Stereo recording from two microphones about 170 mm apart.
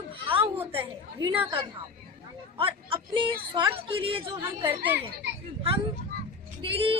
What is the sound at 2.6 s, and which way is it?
A woman's voice, 30° right (ahead or behind).